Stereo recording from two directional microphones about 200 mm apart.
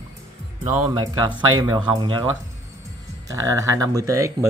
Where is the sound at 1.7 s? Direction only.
25° right (ahead or behind).